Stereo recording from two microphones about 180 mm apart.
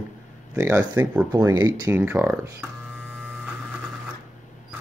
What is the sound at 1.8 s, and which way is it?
Speech, 10° right (ahead or behind).